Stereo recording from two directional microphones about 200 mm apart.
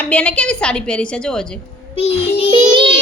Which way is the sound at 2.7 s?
25° right (ahead or behind).